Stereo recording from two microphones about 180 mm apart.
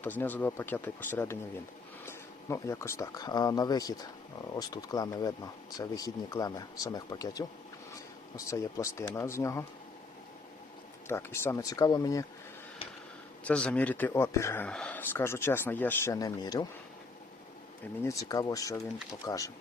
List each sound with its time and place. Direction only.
0.0 s speech: 10° left (ahead or behind)
11.1 s speech: 15° left (ahead or behind)
13.4 s speech: 5° left (ahead or behind); by 16.6 s 20° left (ahead or behind)
18.0 s speech: 15° left (ahead or behind)